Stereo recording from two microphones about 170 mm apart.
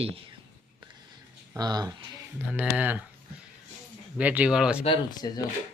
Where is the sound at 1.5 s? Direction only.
25° right (ahead or behind).